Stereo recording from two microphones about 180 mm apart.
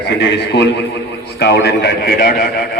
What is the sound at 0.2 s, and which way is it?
A man's voice, 70° left (ahead or behind).